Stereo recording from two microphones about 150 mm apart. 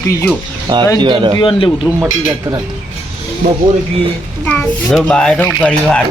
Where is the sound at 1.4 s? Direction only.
35° left (ahead or behind).